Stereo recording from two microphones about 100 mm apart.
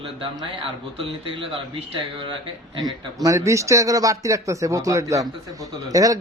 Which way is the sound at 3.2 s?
30° right (ahead or behind).